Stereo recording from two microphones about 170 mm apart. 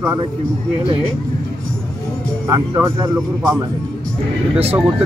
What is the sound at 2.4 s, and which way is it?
Speech, 20° right (ahead or behind).